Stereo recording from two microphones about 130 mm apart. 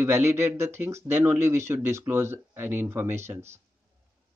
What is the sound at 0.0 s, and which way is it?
Speech, 20° right (ahead or behind).